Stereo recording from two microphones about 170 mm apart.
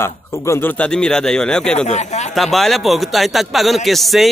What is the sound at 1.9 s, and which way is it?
Speech, 40° left (ahead or behind).